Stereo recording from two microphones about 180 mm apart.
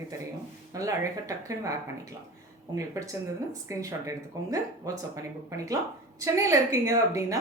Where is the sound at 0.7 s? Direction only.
20° right (ahead or behind).